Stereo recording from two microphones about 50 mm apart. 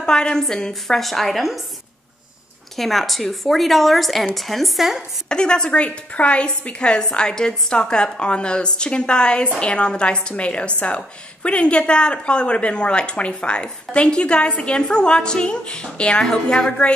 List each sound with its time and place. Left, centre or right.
0.0 s a woman's voice: centre
2.7 s a woman's voice: centre
5.3 s speech: centre